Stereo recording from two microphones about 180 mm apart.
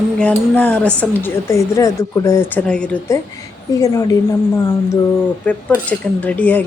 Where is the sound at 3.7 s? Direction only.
20° left (ahead or behind).